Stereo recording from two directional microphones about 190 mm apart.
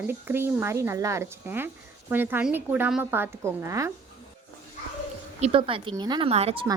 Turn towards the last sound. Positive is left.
turn(degrees=-30)  # may be behind; listen again after turning